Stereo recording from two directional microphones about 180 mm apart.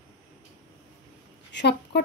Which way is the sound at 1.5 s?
75° left (ahead or behind).